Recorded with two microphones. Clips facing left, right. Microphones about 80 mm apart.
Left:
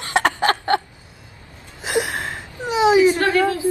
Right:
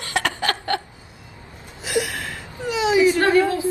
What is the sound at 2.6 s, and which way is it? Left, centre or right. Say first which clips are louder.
Whimper: left 3 dB; left.